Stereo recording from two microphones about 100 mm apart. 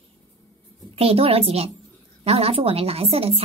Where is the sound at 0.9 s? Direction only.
75° right (ahead or behind).